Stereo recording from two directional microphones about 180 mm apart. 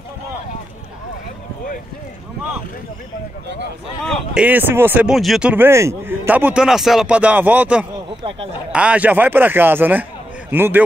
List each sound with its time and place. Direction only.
4.0 s speech: centre (ahead or behind)
8.2 s speech: 30° right (ahead or behind)
8.7 s a man's voice: 5° right (ahead or behind)